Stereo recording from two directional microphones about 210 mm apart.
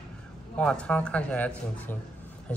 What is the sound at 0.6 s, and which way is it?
Speech, 5° left (ahead or behind).